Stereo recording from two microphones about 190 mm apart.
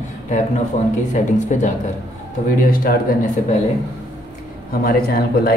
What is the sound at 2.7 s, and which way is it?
Speech, 50° left (ahead or behind).